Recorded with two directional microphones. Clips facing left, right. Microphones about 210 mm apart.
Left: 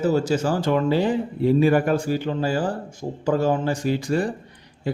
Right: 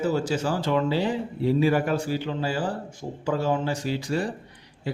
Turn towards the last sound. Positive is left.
turn(degrees=50)  # may be behind; listen again after turning